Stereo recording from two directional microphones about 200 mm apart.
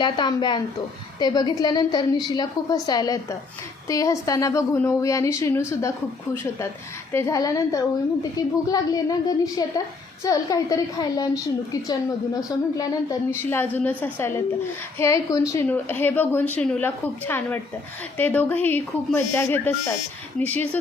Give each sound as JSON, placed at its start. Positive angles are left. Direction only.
{"t": 0.0, "sound": "a woman's voice", "side_deg": 20}